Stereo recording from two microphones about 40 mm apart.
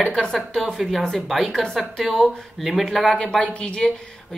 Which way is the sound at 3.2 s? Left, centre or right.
Left.